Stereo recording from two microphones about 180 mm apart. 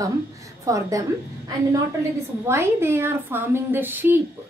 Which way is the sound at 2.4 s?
15° right (ahead or behind).